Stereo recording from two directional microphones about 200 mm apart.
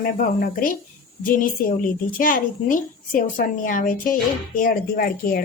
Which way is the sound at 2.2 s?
45° left (ahead or behind).